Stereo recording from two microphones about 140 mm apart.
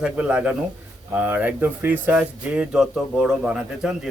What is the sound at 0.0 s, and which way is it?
Speech, 10° right (ahead or behind).